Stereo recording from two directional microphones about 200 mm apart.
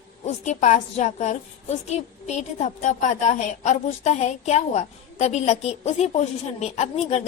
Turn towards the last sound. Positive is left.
turn(degrees=35)  # may be behind; listen again after turning